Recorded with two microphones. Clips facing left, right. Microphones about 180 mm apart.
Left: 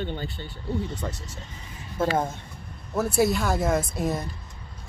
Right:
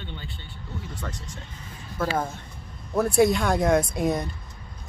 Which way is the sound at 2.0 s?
25° left (ahead or behind).